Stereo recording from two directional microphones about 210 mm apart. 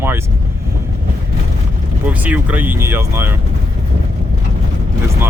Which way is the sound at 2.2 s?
5° right (ahead or behind).